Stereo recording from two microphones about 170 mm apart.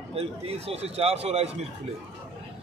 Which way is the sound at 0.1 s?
35° right (ahead or behind).